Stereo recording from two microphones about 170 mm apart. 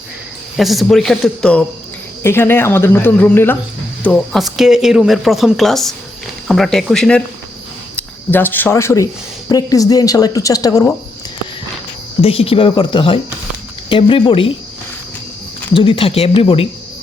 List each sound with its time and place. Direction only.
0.5 s speech: centre (ahead or behind); by 10.9 s 20° left (ahead or behind)
12.2 s speech: 35° left (ahead or behind)
15.7 s speech: 30° left (ahead or behind)